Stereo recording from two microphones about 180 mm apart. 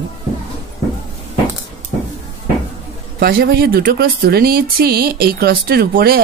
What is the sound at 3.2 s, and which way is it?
Speech, 60° right (ahead or behind).